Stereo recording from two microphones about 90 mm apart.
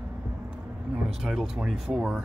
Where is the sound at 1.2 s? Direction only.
5° right (ahead or behind).